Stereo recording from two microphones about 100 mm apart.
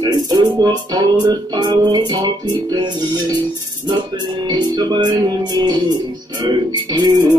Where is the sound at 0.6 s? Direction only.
45° right (ahead or behind).